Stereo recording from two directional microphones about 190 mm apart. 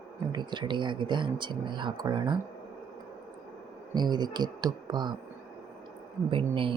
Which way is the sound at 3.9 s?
20° right (ahead or behind).